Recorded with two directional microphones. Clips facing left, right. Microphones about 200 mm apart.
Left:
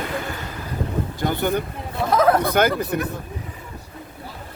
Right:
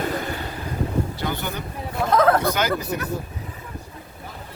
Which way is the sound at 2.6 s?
55° left (ahead or behind).